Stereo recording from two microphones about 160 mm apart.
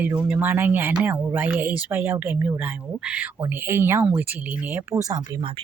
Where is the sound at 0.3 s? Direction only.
10° right (ahead or behind).